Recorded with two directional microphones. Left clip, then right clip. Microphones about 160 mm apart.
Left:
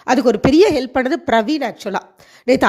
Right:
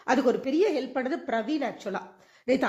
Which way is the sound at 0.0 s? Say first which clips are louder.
Left 10 dB; 60° left (ahead or behind).